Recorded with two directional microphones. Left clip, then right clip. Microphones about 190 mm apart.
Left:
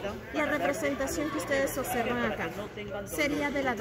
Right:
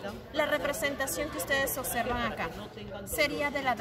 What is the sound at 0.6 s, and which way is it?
Speech, 20° right (ahead or behind).